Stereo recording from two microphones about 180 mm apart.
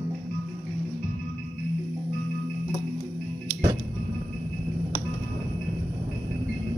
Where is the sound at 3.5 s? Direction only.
20° right (ahead or behind).